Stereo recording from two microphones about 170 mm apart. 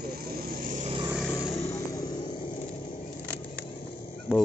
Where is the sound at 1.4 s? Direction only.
35° left (ahead or behind).